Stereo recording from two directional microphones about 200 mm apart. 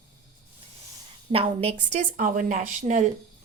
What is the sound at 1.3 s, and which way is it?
Speech, 30° right (ahead or behind).